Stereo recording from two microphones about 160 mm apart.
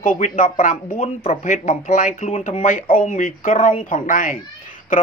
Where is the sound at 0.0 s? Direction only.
55° left (ahead or behind).